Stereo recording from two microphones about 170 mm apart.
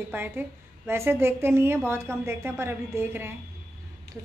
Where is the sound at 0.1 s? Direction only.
10° right (ahead or behind).